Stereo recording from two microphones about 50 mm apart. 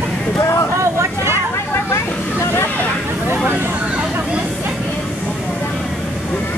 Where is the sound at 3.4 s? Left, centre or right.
Right.